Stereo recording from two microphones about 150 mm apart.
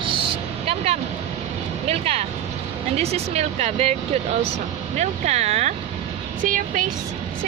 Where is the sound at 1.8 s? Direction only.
45° right (ahead or behind).